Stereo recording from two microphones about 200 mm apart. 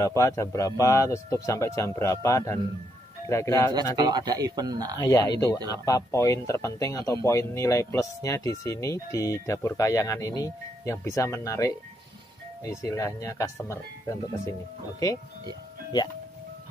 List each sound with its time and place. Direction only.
0.0 s speech: 15° left (ahead or behind)
3.9 s speech: 20° right (ahead or behind)
5.0 s speech: 15° left (ahead or behind)